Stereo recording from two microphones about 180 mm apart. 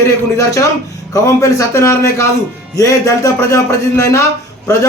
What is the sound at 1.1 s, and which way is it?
A man's voice, 15° left (ahead or behind).